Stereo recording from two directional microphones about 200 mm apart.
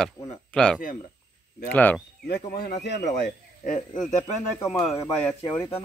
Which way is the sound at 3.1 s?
40° left (ahead or behind).